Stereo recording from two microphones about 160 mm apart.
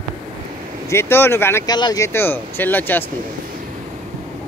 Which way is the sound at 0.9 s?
15° left (ahead or behind).